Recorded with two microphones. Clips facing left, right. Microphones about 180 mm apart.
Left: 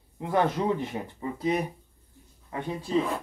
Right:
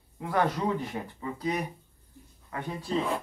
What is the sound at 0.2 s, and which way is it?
Speech, 20° left (ahead or behind).